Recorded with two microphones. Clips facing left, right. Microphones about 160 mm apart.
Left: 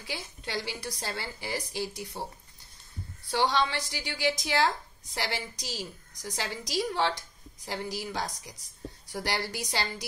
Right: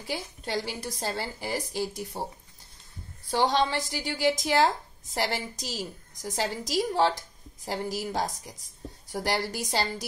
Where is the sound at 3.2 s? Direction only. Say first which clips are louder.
Right 2 dB; 40° right (ahead or behind).